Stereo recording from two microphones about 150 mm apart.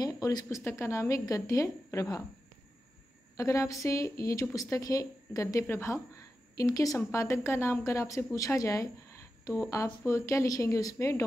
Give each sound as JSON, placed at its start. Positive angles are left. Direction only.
{"t": 0.0, "sound": "a woman's voice", "side_deg": 25}
{"t": 3.3, "sound": "a woman's voice", "side_deg": 20}
{"t": 9.8, "sound": "a woman's voice", "side_deg": 20}